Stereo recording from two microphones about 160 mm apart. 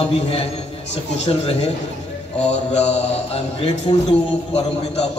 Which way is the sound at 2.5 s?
45° left (ahead or behind).